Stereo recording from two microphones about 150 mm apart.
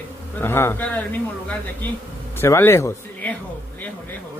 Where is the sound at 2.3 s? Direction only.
15° left (ahead or behind).